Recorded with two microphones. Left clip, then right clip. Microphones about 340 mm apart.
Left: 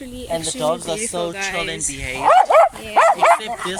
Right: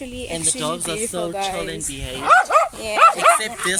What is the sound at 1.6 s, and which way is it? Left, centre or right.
Speech, centre.